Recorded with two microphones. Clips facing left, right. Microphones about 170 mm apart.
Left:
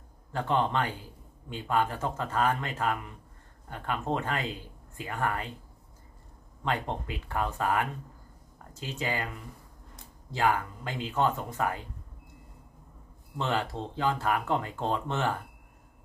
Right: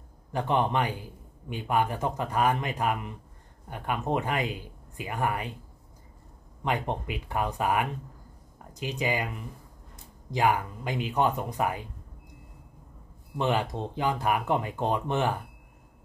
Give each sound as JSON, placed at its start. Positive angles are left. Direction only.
{"t": 0.3, "sound": "speech", "side_deg": -15}
{"t": 6.6, "sound": "speech", "side_deg": -15}
{"t": 13.4, "sound": "speech", "side_deg": -15}